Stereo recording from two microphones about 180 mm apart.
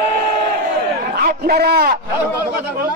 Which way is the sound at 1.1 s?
60° right (ahead or behind).